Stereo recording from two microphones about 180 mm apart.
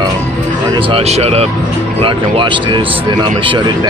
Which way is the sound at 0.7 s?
30° right (ahead or behind).